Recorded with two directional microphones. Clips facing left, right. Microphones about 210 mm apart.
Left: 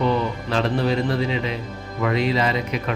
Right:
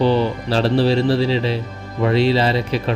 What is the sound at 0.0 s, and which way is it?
A man's voice, 30° right (ahead or behind).